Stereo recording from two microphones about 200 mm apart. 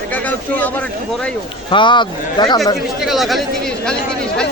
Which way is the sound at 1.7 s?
25° left (ahead or behind).